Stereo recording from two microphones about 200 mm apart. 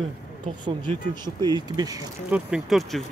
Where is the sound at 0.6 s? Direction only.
25° right (ahead or behind).